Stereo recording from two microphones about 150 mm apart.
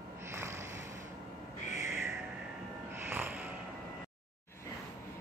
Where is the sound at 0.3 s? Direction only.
15° right (ahead or behind).